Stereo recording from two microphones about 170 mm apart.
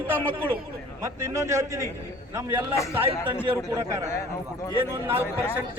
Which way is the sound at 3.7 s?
20° right (ahead or behind).